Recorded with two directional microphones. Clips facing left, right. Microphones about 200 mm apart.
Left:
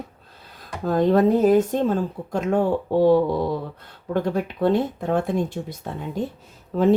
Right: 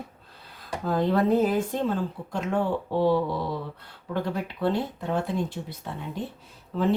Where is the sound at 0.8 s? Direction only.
45° left (ahead or behind).